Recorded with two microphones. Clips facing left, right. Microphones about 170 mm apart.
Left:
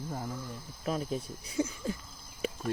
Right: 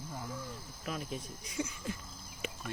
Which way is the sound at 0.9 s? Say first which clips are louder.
Left 7 dB; 35° left (ahead or behind).